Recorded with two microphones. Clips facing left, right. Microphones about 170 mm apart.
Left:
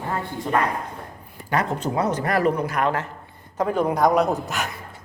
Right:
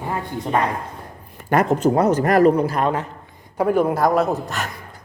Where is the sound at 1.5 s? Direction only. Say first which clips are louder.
Right 7 dB; 50° right (ahead or behind); by 3.0 s 25° right (ahead or behind).